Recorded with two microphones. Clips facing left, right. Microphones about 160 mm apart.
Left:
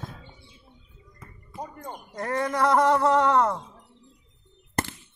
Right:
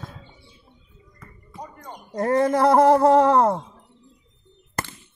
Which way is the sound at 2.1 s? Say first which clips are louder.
Right 8 dB; 30° right (ahead or behind).